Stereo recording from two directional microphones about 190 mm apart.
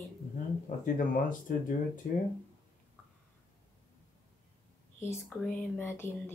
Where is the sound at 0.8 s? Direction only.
45° left (ahead or behind).